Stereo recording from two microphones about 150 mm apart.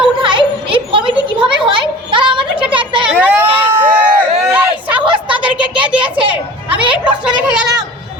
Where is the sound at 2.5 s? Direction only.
10° right (ahead or behind).